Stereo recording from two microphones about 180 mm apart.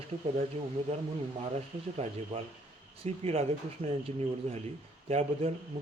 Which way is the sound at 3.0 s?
35° right (ahead or behind).